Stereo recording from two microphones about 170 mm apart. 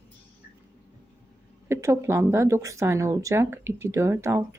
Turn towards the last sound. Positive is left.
turn(degrees=-15)  # may be behind; listen again after turning